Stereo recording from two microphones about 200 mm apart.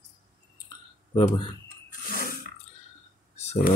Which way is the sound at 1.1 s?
25° left (ahead or behind).